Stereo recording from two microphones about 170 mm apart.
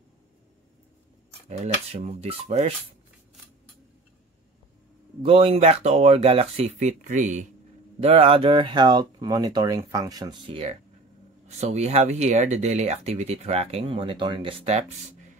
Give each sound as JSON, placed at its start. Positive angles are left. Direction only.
{"t": 1.6, "sound": "speech", "side_deg": -40}
{"t": 5.2, "sound": "speech", "side_deg": -35}
{"t": 8.0, "sound": "speech", "side_deg": -35}